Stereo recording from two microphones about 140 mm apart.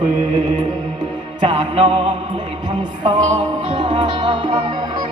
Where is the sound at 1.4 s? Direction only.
35° right (ahead or behind).